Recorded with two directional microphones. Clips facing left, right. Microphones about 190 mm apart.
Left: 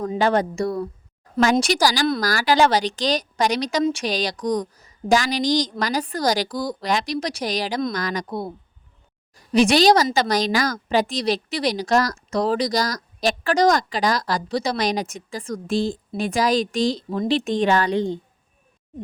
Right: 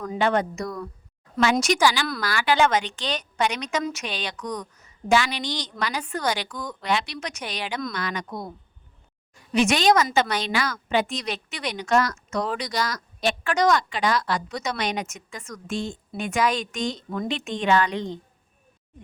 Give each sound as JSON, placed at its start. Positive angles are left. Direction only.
{"t": 0.2, "sound": "speech", "side_deg": 35}